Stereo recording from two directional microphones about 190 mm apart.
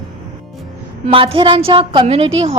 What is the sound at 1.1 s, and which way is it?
A woman's voice, 25° right (ahead or behind).